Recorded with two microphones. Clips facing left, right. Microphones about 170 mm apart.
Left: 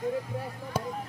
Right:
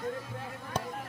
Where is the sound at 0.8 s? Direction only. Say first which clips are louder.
Left 3 dB; 5° left (ahead or behind).